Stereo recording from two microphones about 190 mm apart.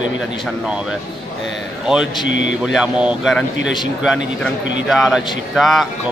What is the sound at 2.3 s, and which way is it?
Speech, 75° left (ahead or behind).